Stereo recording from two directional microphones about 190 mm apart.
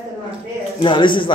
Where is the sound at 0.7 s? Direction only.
25° left (ahead or behind).